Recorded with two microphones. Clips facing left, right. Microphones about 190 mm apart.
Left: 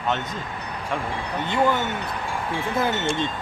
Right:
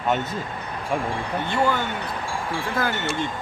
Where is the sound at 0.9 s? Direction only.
10° right (ahead or behind).